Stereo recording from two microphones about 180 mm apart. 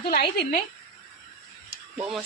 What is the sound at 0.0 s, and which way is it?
Speech, 60° left (ahead or behind).